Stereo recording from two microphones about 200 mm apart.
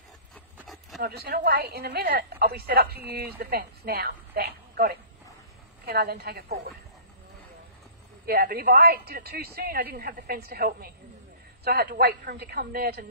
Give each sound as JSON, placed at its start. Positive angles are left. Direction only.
{"t": 0.6, "sound": "a sound", "side_deg": 0}
{"t": 1.0, "sound": "a woman's voice", "side_deg": -50}
{"t": 8.3, "sound": "a woman's voice", "side_deg": -50}